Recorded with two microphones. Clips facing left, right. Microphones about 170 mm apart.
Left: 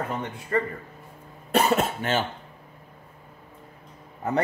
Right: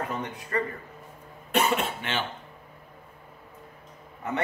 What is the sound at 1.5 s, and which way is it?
Speech, 40° left (ahead or behind).